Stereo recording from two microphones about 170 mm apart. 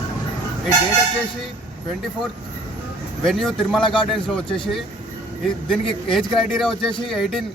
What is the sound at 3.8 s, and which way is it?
Speech, 30° left (ahead or behind).